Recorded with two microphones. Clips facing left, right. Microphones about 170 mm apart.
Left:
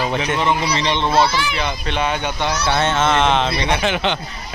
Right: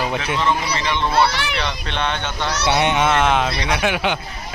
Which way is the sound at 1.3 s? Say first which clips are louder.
Left 3 dB; 65° right (ahead or behind).